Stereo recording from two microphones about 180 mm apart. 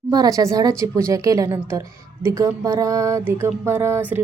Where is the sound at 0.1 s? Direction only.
20° right (ahead or behind).